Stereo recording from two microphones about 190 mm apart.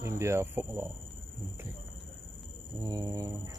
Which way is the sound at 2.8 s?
20° right (ahead or behind).